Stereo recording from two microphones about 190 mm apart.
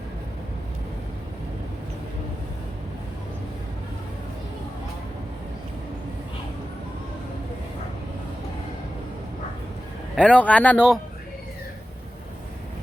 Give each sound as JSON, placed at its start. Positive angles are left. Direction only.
{"t": 10.2, "sound": "speech", "side_deg": 5}